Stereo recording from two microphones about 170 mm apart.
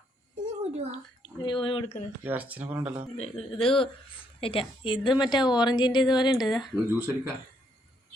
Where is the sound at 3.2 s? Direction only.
35° left (ahead or behind).